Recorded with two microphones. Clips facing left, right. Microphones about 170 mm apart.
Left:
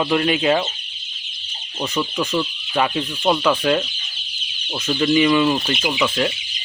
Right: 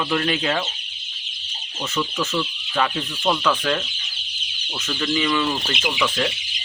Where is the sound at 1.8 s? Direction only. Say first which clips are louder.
Left 3 dB; 20° left (ahead or behind).